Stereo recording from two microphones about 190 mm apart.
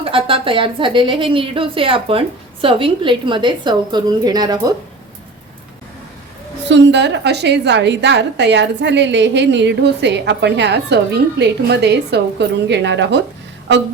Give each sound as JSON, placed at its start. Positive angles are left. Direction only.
{"t": 0.0, "sound": "a woman's voice", "side_deg": -30}
{"t": 6.7, "sound": "a woman's voice", "side_deg": -65}